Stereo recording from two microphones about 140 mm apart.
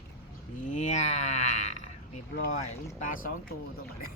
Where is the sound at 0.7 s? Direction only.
60° left (ahead or behind).